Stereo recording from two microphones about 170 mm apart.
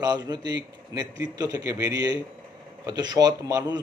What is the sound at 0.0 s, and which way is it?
A man's voice, 25° right (ahead or behind).